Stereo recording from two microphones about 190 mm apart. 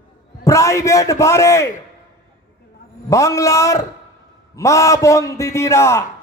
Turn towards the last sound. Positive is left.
turn(degrees=15)  # may be behind; listen again after turning